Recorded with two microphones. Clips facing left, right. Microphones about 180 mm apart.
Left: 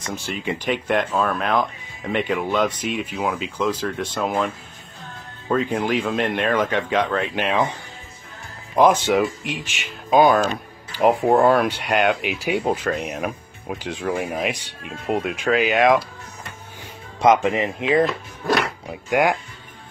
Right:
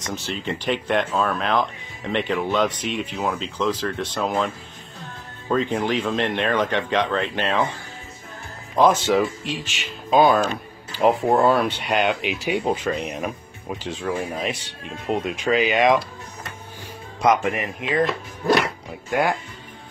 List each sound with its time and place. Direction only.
0.0 s speech: 10° left (ahead or behind)
5.5 s speech: 5° left (ahead or behind)
11.4 s speech: 10° left (ahead or behind)
17.2 s speech: 25° left (ahead or behind)
18.0 s speech: centre (ahead or behind)
19.0 s speech: 15° left (ahead or behind)